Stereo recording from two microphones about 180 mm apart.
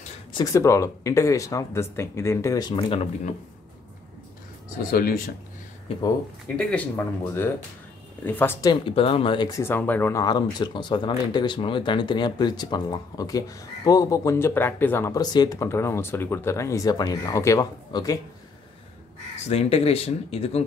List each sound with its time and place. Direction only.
0.3 s speech: 20° left (ahead or behind)
4.9 s speech: 55° left (ahead or behind)
6.5 s speech: 5° left (ahead or behind)
8.8 s speech: 30° left (ahead or behind)
9.6 s speech: 10° left (ahead or behind)
19.4 s speech: 35° left (ahead or behind)